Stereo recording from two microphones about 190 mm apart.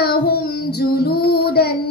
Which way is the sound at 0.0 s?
55° left (ahead or behind).